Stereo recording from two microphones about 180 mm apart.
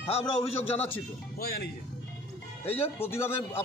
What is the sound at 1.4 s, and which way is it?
Speech, 60° left (ahead or behind).